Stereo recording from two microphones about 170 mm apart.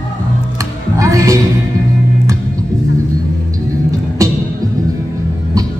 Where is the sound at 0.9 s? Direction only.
20° right (ahead or behind).